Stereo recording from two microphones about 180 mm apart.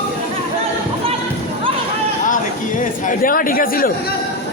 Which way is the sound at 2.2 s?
45° left (ahead or behind).